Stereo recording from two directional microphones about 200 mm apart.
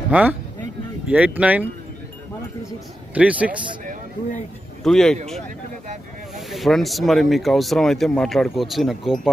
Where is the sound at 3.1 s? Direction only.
5° right (ahead or behind).